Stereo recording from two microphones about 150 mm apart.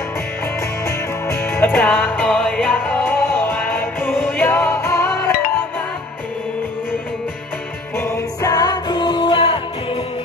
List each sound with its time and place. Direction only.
0.8 s music: 20° left (ahead or behind)
8.0 s music: 20° left (ahead or behind)